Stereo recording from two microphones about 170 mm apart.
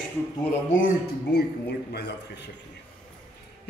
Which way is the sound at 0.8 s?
70° left (ahead or behind).